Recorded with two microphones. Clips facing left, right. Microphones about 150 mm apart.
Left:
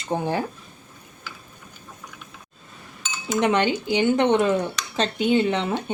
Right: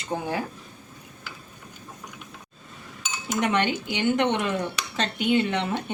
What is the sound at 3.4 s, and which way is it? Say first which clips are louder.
Speech: left 4 dB; 35° left (ahead or behind).